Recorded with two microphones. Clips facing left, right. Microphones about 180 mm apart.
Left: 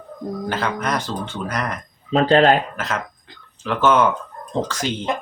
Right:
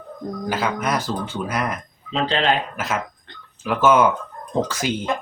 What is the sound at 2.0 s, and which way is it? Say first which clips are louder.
Speech: left 7 dB; 45° left (ahead or behind).